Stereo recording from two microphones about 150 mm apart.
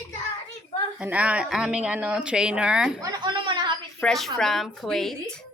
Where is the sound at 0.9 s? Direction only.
10° right (ahead or behind).